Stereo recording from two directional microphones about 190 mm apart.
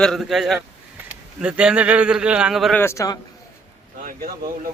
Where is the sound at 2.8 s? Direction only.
15° left (ahead or behind).